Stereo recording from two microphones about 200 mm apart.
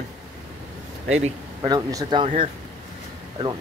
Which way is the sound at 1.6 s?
20° right (ahead or behind).